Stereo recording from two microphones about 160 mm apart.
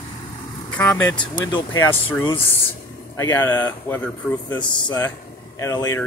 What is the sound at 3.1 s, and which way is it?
Speech, 15° left (ahead or behind).